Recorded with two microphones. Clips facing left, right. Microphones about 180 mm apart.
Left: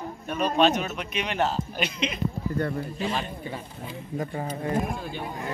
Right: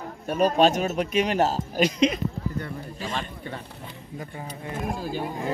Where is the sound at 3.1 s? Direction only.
10° left (ahead or behind).